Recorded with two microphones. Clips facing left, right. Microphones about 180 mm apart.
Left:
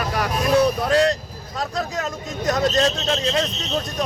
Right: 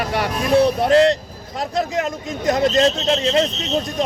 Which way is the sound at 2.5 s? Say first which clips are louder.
Right 3 dB; 20° right (ahead or behind).